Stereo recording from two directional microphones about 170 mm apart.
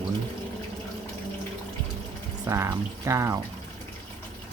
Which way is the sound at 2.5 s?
20° right (ahead or behind).